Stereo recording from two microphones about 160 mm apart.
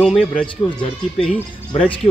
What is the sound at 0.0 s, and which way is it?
Speech, centre (ahead or behind).